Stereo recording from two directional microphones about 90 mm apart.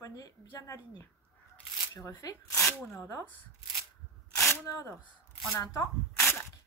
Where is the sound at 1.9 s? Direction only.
40° left (ahead or behind).